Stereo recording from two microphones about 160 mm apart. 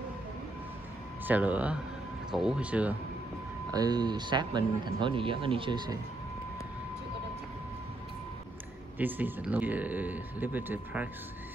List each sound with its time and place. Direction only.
1.2 s speech: 10° right (ahead or behind)
3.7 s speech: 25° right (ahead or behind)
8.9 s speech: 10° right (ahead or behind)